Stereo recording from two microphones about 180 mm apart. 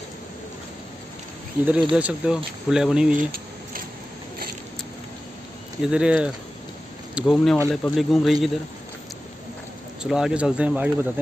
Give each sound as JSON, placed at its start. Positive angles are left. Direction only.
{"t": 1.6, "sound": "speech", "side_deg": -5}
{"t": 5.9, "sound": "speech", "side_deg": -5}
{"t": 10.0, "sound": "speech", "side_deg": -5}